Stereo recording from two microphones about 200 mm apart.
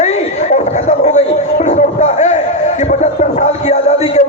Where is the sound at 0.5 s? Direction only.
35° left (ahead or behind).